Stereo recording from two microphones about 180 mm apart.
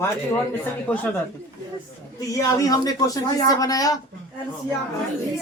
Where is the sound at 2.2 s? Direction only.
20° left (ahead or behind).